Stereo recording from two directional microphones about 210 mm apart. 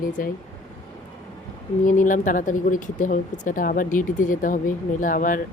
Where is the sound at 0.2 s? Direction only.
40° left (ahead or behind).